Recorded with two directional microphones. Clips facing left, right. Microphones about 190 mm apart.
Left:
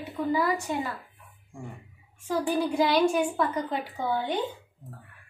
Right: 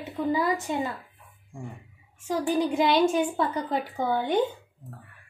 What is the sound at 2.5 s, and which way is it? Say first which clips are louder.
Speech: right 2 dB; 20° right (ahead or behind).